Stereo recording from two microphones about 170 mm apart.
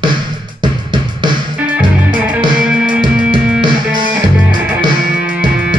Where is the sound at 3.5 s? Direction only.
25° right (ahead or behind).